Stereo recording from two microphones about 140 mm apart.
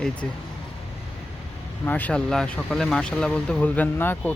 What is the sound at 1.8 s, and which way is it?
Speech, 10° left (ahead or behind).